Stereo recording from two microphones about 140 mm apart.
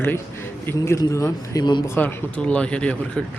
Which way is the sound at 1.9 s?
10° left (ahead or behind).